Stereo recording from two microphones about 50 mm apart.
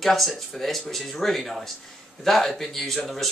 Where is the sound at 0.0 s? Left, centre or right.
Centre.